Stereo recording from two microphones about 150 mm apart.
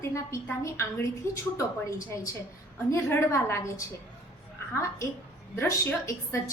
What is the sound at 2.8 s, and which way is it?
A woman's voice, 20° left (ahead or behind).